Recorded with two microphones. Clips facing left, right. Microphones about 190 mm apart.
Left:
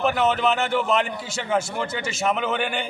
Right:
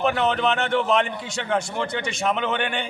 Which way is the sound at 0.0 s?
5° left (ahead or behind).